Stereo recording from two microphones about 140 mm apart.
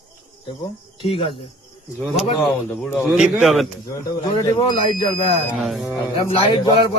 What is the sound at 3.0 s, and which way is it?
Speech, 5° right (ahead or behind).